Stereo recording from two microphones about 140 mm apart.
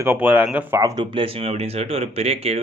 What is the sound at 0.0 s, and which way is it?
Speech, 15° right (ahead or behind).